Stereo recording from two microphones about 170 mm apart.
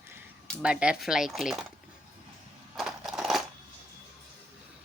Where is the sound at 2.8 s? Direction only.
Centre (ahead or behind).